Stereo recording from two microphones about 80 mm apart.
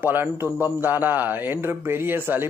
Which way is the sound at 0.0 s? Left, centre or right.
Right.